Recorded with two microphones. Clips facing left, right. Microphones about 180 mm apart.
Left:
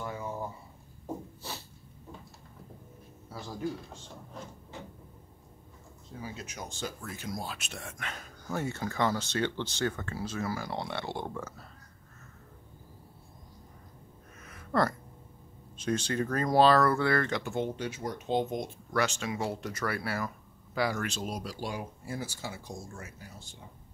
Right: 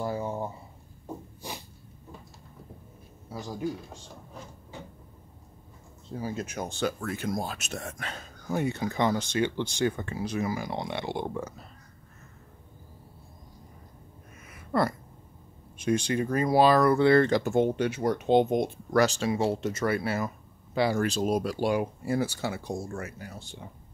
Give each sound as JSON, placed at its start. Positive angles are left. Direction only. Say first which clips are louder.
{"t": 0.0, "sound": "a sound", "louder": "right 6 dB", "side_deg": -30}
{"t": 1.4, "sound": "snort", "louder": "right 4 dB", "side_deg": -15}
{"t": 3.3, "sound": "speech", "louder": "right 3 dB", "side_deg": -15}
{"t": 6.1, "sound": "speech", "louder": "right 8 dB", "side_deg": -45}
{"t": 8.5, "sound": "speech", "louder": "right 5 dB", "side_deg": -15}
{"t": 14.4, "sound": "a sound", "louder": "right 2 dB", "side_deg": -10}
{"t": 15.8, "sound": "speech", "louder": "right 4 dB", "side_deg": -15}
{"t": 17.4, "sound": "speech", "louder": "right 8 dB", "side_deg": -45}
{"t": 17.7, "sound": "speech", "louder": "right 9 dB", "side_deg": -65}
{"t": 18.9, "sound": "speech", "louder": "right 6 dB", "side_deg": -40}